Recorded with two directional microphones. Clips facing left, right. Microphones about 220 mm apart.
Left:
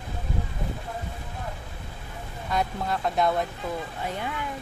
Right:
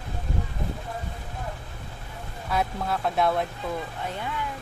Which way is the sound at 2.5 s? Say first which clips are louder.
Even; centre (ahead or behind).